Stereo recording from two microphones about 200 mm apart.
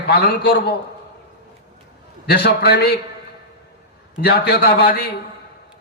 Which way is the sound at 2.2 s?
55° left (ahead or behind).